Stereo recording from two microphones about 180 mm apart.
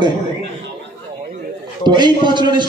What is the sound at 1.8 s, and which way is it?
Speech, 25° right (ahead or behind).